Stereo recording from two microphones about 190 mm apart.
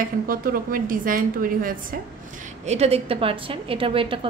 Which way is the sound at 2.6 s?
35° right (ahead or behind).